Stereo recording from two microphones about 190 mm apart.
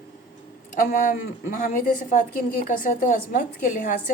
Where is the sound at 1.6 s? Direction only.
45° left (ahead or behind).